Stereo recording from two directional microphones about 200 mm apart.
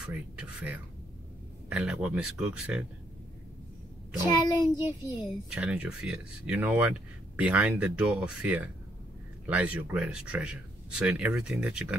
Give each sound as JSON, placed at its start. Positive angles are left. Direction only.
{"t": 0.0, "sound": "speech", "side_deg": -5}
{"t": 4.2, "sound": "a child's voice", "side_deg": 20}
{"t": 5.5, "sound": "speech", "side_deg": -5}